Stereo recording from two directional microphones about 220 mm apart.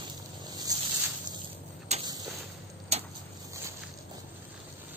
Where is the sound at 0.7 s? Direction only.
15° right (ahead or behind).